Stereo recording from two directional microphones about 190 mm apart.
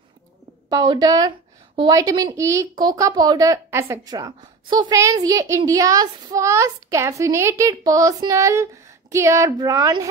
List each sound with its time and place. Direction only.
0.7 s a woman's voice: 20° right (ahead or behind)